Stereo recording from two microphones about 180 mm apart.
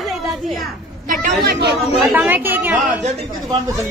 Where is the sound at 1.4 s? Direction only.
65° right (ahead or behind).